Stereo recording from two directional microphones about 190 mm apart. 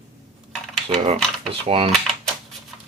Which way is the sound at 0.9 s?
35° right (ahead or behind).